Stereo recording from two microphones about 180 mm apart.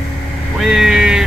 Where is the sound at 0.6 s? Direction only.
5° right (ahead or behind).